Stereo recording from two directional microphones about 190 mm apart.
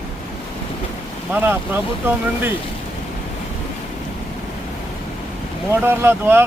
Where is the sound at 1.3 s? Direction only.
10° right (ahead or behind).